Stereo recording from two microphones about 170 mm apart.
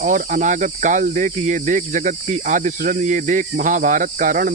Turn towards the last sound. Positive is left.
turn(degrees=-55)  # may be behind; listen again after turning